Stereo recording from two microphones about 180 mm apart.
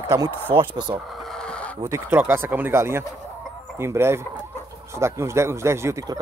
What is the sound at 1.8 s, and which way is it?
Speech, 15° right (ahead or behind).